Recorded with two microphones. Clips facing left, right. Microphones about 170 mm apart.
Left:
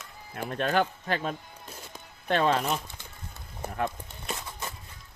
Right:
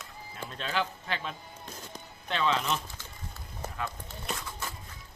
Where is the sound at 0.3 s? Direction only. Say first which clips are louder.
Left 7 dB; 55° left (ahead or behind).